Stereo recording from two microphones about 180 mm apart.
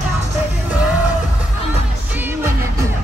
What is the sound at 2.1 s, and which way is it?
Music, 10° right (ahead or behind).